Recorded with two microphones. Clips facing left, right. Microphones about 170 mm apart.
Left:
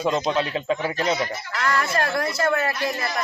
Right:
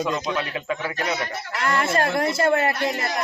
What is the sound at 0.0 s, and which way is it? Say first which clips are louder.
Speech: left 3 dB; 30° left (ahead or behind).